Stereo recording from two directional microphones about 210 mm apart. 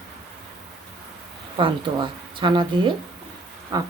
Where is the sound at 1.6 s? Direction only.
25° right (ahead or behind).